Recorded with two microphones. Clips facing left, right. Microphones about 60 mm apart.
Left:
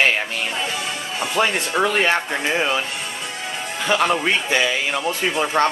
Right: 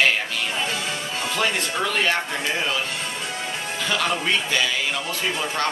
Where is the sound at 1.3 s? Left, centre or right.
Left.